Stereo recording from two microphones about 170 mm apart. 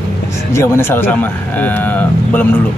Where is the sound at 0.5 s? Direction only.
15° left (ahead or behind).